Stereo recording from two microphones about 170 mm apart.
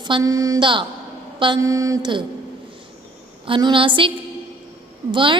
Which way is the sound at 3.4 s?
30° right (ahead or behind).